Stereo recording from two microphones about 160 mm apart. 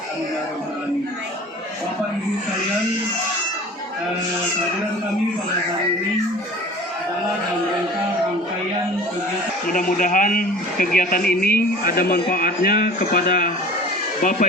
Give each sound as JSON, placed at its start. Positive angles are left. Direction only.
{"t": 9.7, "sound": "a man's voice", "side_deg": 55}